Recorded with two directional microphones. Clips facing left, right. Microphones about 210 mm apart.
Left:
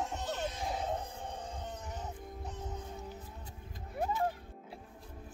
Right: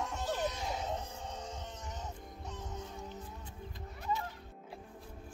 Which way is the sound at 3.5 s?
50° left (ahead or behind).